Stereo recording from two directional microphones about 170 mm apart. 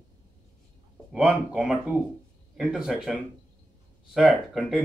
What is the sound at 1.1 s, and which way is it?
A man's voice, 5° right (ahead or behind).